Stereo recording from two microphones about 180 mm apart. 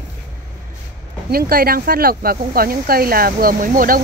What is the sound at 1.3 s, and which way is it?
Speech, 55° right (ahead or behind).